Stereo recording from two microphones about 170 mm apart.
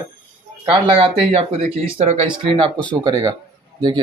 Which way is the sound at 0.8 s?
30° right (ahead or behind).